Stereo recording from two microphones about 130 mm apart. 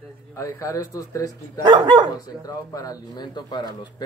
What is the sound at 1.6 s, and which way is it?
Speech, 35° right (ahead or behind).